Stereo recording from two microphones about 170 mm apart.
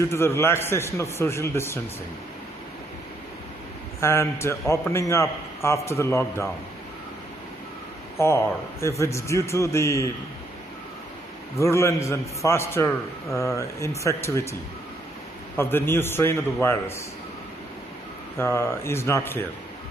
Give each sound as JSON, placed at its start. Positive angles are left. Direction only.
{"t": 0.1, "sound": "a man's voice", "side_deg": 15}
{"t": 4.0, "sound": "a man's voice", "side_deg": 15}
{"t": 8.2, "sound": "a man's voice", "side_deg": 15}
{"t": 11.5, "sound": "a man's voice", "side_deg": 15}
{"t": 18.4, "sound": "a man's voice", "side_deg": 15}